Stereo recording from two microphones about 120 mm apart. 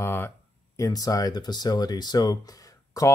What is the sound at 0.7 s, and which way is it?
Speech, 30° left (ahead or behind).